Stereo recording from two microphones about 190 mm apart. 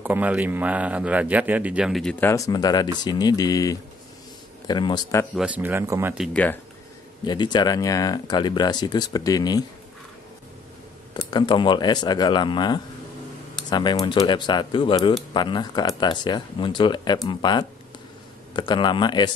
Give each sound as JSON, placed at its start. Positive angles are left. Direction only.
{"t": 0.0, "sound": "speech", "side_deg": -10}
{"t": 5.3, "sound": "speech", "side_deg": -5}
{"t": 6.1, "sound": "speech", "side_deg": 5}
{"t": 7.2, "sound": "speech", "side_deg": 20}
{"t": 11.2, "sound": "speech", "side_deg": 25}